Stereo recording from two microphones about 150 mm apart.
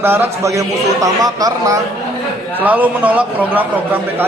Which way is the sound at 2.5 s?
10° right (ahead or behind).